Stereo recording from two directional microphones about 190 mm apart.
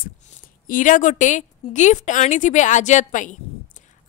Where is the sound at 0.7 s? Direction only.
45° left (ahead or behind).